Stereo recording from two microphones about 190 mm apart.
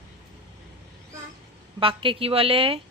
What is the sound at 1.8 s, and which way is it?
Speech, 30° right (ahead or behind).